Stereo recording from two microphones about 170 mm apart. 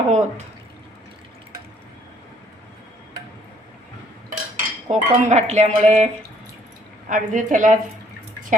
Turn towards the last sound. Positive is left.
turn(degrees=-50)  # may be behind; listen again after turning